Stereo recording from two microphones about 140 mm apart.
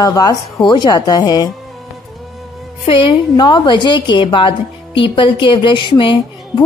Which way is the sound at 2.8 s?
40° left (ahead or behind).